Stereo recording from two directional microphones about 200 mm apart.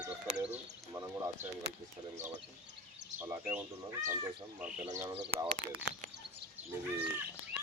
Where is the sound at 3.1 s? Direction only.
10° right (ahead or behind).